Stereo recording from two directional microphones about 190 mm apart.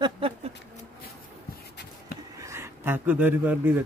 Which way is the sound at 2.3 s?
15° right (ahead or behind).